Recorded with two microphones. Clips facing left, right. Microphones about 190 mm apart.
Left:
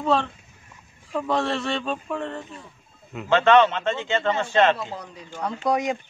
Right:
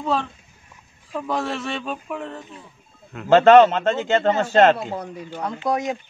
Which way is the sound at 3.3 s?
40° right (ahead or behind).